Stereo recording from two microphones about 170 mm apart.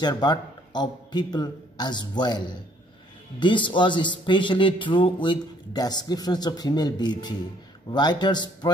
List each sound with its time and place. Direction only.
0.0 s speech: 25° left (ahead or behind)